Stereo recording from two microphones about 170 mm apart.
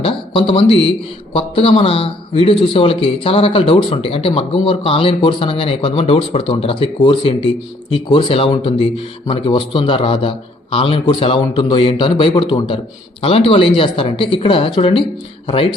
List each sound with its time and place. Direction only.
0.0 s a man's voice: 30° left (ahead or behind)